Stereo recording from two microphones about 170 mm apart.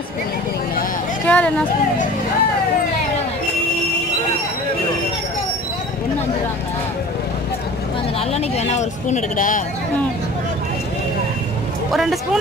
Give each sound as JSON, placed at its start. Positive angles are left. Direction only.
{"t": 1.2, "sound": "a sound", "side_deg": 10}
{"t": 8.3, "sound": "speech", "side_deg": 40}
{"t": 11.9, "sound": "speech", "side_deg": 0}